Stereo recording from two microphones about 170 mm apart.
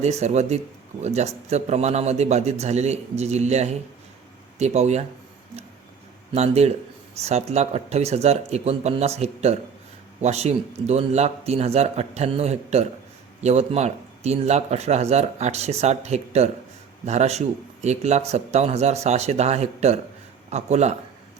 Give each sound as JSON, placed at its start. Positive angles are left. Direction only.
{"t": 0.0, "sound": "speech", "side_deg": -40}
{"t": 6.3, "sound": "speech", "side_deg": -40}